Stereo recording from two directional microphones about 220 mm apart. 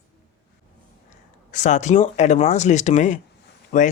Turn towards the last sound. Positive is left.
turn(degrees=35)  # may be behind; listen again after turning